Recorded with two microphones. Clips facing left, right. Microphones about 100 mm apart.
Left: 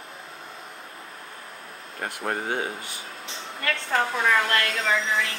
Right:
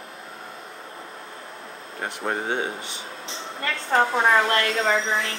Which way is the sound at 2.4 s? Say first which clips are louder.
Right 2 dB; 25° right (ahead or behind).